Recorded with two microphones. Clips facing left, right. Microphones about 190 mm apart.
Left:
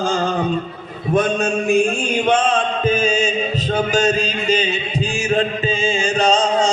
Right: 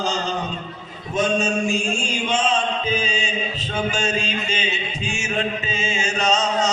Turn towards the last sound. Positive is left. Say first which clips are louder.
# left 5 dB
turn(degrees=30)  # may be behind; listen again after turning